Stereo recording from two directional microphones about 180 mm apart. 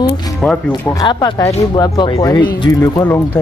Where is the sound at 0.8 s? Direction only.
20° left (ahead or behind).